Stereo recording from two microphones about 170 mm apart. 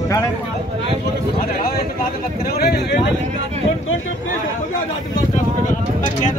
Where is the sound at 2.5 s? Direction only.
70° left (ahead or behind).